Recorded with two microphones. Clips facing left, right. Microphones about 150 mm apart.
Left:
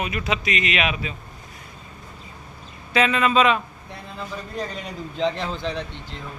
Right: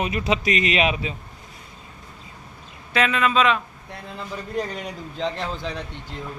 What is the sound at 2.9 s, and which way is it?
Speech, centre (ahead or behind).